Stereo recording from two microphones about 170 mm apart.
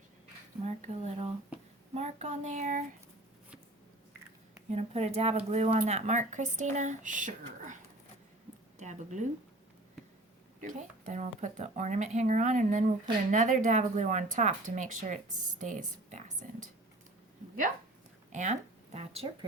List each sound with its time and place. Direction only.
0.6 s speech: 40° right (ahead or behind)
4.7 s speech: 40° right (ahead or behind)
8.8 s speech: 45° right (ahead or behind)
10.6 s speech: 50° right (ahead or behind)
18.3 s a sound: 45° right (ahead or behind)
18.9 s speech: 35° right (ahead or behind)